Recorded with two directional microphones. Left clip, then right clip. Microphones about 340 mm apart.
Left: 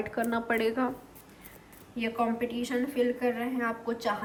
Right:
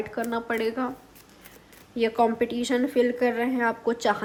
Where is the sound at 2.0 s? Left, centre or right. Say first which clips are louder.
Right 7 dB; centre.